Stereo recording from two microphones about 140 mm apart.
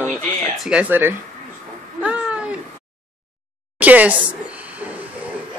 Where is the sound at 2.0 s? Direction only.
10° right (ahead or behind).